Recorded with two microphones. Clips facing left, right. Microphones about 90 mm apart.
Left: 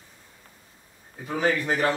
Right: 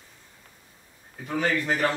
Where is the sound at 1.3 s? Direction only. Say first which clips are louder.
Left 1 dB; 5° left (ahead or behind).